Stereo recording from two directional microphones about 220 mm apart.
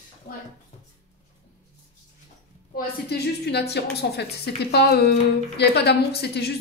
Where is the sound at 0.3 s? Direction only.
35° left (ahead or behind).